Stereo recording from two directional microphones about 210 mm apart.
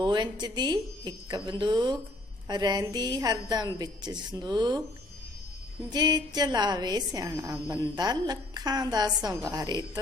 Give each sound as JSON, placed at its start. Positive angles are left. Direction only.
{"t": 0.0, "sound": "a woman's voice", "side_deg": -20}
{"t": 5.9, "sound": "a woman's voice", "side_deg": -20}